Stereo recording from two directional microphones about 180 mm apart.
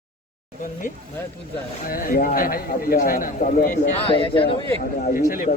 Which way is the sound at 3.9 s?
30° left (ahead or behind).